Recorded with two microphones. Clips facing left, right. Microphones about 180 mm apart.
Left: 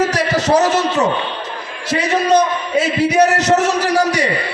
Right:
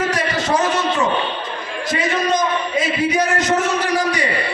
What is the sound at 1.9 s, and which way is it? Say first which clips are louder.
A man's voice: left 5 dB; 75° left (ahead or behind).